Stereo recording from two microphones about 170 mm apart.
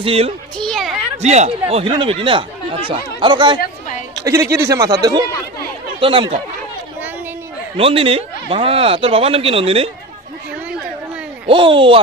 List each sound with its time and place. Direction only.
0.0 s speech: 35° right (ahead or behind)
0.6 s a sound: centre (ahead or behind)
1.2 s speech: 40° right (ahead or behind); by 5.2 s 20° right (ahead or behind)
5.9 s speech: 30° right (ahead or behind)
7.7 s speech: 35° right (ahead or behind)
11.4 s speech: 30° right (ahead or behind)